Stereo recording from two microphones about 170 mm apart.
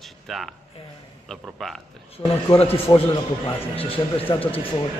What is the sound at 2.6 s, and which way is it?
A man's voice, 35° left (ahead or behind).